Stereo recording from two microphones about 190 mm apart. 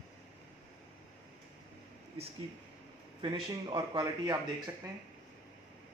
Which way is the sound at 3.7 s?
20° right (ahead or behind).